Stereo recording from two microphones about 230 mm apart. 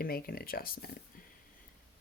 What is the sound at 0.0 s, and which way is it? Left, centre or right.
Speech, left.